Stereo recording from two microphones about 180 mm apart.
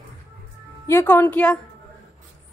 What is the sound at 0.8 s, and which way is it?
Speech, 10° left (ahead or behind).